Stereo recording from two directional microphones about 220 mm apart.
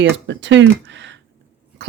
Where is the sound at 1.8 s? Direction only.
50° right (ahead or behind).